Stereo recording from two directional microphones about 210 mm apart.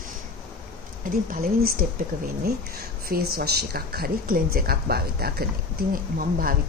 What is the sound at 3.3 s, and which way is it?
A woman's voice, 50° right (ahead or behind).